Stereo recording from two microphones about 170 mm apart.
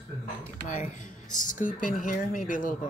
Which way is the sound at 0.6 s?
50° left (ahead or behind).